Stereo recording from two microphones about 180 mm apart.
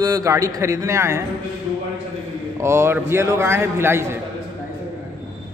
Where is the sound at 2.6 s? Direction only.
15° right (ahead or behind).